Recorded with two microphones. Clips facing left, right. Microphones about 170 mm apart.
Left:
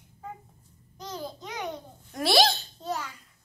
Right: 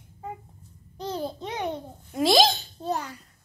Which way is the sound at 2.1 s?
15° right (ahead or behind).